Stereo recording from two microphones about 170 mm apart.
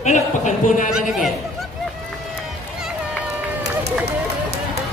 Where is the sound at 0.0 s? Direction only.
45° left (ahead or behind).